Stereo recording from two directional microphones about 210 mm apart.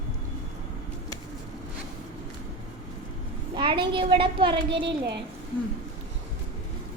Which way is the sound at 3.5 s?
25° right (ahead or behind).